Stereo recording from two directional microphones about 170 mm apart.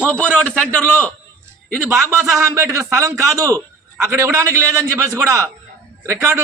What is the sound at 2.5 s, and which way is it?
A man's voice, 15° right (ahead or behind).